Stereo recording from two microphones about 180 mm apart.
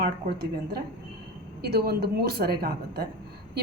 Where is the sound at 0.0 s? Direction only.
60° right (ahead or behind).